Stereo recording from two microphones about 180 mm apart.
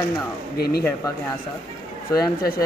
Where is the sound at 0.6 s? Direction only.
60° left (ahead or behind).